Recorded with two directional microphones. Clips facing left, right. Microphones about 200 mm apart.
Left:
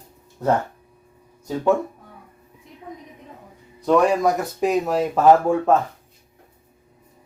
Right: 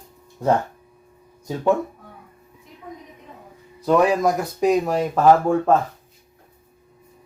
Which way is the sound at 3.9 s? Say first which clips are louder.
Even; centre (ahead or behind).